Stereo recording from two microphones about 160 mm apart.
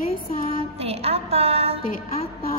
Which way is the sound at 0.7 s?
40° right (ahead or behind).